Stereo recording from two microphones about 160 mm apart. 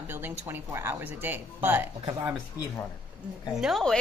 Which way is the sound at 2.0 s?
25° right (ahead or behind).